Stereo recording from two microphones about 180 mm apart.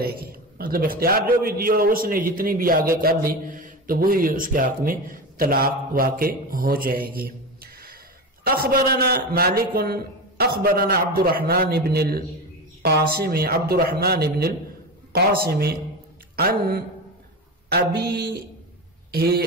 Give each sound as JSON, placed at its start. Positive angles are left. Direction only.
{"t": 0.0, "sound": "a man's voice", "side_deg": -55}